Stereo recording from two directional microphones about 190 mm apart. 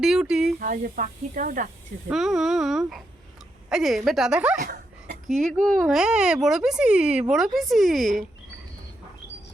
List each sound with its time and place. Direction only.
0.0 s a child's voice: centre (ahead or behind)
0.6 s speech: 45° right (ahead or behind)
2.0 s a child's voice: centre (ahead or behind)
4.6 s a sound: 55° right (ahead or behind)
5.3 s a child's voice: centre (ahead or behind)